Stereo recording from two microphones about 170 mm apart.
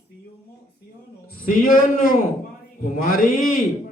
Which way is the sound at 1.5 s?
55° left (ahead or behind).